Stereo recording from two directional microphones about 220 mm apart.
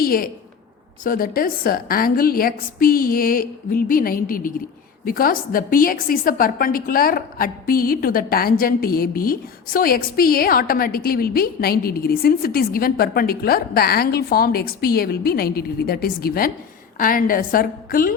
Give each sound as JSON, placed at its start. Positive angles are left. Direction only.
{"t": 0.0, "sound": "a woman's voice", "side_deg": 40}